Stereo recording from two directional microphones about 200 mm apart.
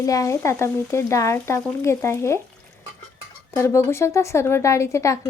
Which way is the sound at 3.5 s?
15° left (ahead or behind).